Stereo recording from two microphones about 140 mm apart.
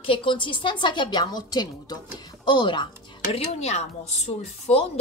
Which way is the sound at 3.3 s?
50° left (ahead or behind).